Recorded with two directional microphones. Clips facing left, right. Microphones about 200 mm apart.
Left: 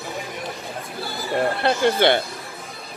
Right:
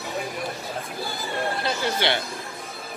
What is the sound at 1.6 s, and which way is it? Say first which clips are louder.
Speech: left 7 dB; 60° left (ahead or behind).